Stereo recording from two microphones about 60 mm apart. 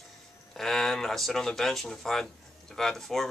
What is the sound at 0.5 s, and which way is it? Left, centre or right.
Speech, centre.